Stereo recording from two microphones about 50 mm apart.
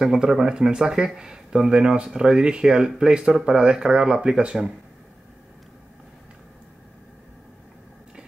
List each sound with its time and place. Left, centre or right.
0.0 s speech: centre